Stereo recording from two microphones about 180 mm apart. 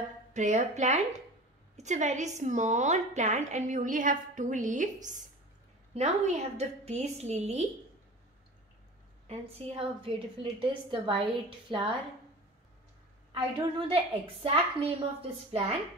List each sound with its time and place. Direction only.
0.3 s a woman's voice: 40° right (ahead or behind)
9.3 s a woman's voice: 30° right (ahead or behind)
13.3 s a woman's voice: 30° right (ahead or behind)